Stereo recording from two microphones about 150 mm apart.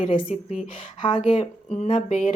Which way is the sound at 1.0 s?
40° left (ahead or behind).